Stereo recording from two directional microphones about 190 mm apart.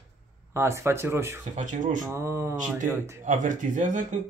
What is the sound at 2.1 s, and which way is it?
Speech, 15° right (ahead or behind).